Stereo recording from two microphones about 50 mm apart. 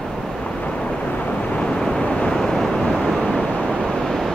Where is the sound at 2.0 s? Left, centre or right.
Left.